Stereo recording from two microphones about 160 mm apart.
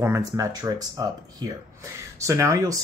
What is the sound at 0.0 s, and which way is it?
Speech, 20° right (ahead or behind).